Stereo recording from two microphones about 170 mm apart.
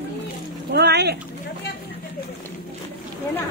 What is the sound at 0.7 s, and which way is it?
Speech, 75° right (ahead or behind).